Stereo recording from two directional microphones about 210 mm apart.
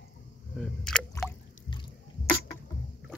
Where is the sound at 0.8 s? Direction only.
5° left (ahead or behind).